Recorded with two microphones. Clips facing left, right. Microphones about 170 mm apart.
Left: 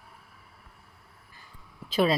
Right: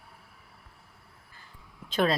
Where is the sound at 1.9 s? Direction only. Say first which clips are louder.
Left 2 dB; 5° left (ahead or behind).